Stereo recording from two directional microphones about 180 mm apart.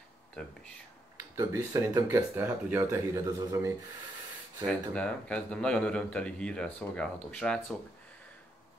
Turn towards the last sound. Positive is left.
turn(degrees=5)  # may be behind; listen again after turning